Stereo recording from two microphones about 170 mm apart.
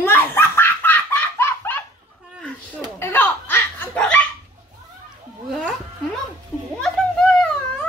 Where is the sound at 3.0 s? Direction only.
10° left (ahead or behind).